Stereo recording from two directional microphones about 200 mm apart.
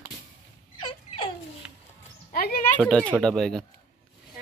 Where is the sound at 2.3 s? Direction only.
50° left (ahead or behind).